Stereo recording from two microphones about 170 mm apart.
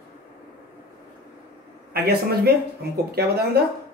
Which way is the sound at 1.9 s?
65° right (ahead or behind).